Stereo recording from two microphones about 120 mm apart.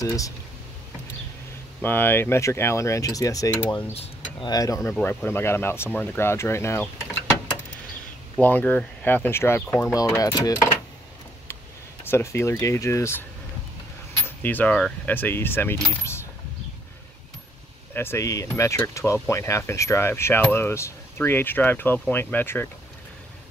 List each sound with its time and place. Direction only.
0.0 s speech: 30° left (ahead or behind)
1.8 s speech: 15° left (ahead or behind)
3.9 s speech: 55° left (ahead or behind)
4.5 s speech: 30° left (ahead or behind)
8.4 s speech: 15° left (ahead or behind); by 10.6 s 30° left (ahead or behind)
12.1 s speech: 25° left (ahead or behind)
17.9 s speech: 20° left (ahead or behind)